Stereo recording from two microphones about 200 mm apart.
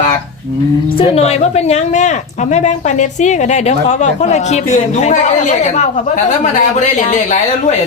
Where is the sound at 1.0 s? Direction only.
30° left (ahead or behind).